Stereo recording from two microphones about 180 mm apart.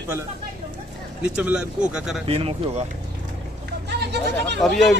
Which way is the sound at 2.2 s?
35° right (ahead or behind).